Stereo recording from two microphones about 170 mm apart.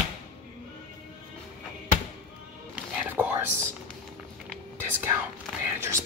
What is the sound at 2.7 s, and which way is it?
Music, 10° right (ahead or behind).